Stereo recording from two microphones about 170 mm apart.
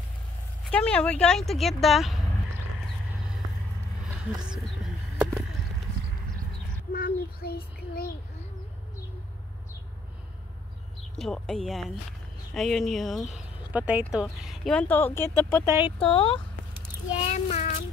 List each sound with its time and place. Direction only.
0.7 s speech: 5° left (ahead or behind)
6.9 s child singing: 60° left (ahead or behind)
11.1 s speech: 5° left (ahead or behind)
15.6 s speech: 15° right (ahead or behind)
16.0 s speech: 30° left (ahead or behind)
17.2 s a child's voice: 45° left (ahead or behind)